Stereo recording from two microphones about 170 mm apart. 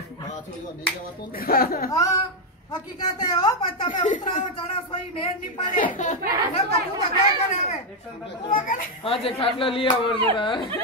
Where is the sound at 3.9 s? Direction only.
50° left (ahead or behind).